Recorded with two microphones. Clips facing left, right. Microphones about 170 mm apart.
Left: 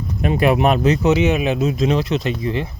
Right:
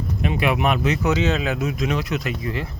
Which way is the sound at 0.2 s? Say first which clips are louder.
Left 6 dB; 40° left (ahead or behind).